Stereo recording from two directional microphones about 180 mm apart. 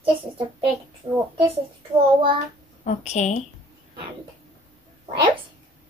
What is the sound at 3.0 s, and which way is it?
Speech, 40° left (ahead or behind).